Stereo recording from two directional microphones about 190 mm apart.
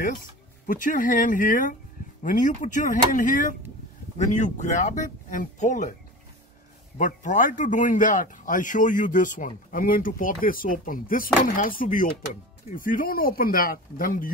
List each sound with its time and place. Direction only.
0.7 s speech: 45° left (ahead or behind)
7.0 s speech: 40° left (ahead or behind)